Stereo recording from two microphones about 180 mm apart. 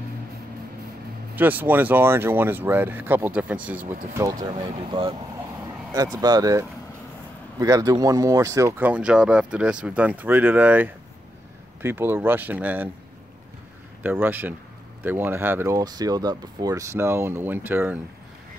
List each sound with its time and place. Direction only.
1.3 s speech: 10° right (ahead or behind); by 5.1 s 30° right (ahead or behind)
6.2 s speech: 20° right (ahead or behind)
14.0 s speech: 10° right (ahead or behind)